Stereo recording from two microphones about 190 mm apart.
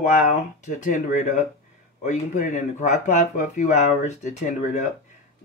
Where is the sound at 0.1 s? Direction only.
40° left (ahead or behind).